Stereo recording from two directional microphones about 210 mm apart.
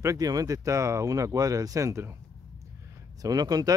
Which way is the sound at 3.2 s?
20° right (ahead or behind).